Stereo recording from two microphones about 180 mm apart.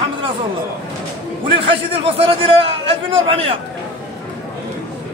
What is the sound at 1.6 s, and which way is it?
A man's voice, 30° right (ahead or behind).